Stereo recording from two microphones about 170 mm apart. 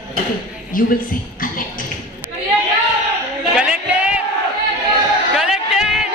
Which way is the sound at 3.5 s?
5° right (ahead or behind).